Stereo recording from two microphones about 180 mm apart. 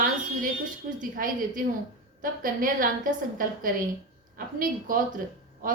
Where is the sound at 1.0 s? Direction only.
50° right (ahead or behind).